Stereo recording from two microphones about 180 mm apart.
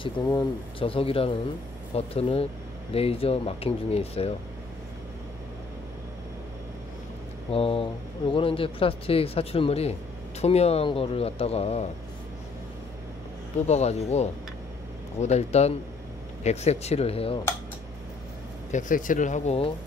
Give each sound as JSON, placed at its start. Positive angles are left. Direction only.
{"t": 0.0, "sound": "speech", "side_deg": 20}
{"t": 7.5, "sound": "speech", "side_deg": 30}
{"t": 13.7, "sound": "speech", "side_deg": 35}
{"t": 18.7, "sound": "speech", "side_deg": 45}